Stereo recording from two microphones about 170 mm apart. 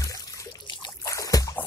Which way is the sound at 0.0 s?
20° left (ahead or behind).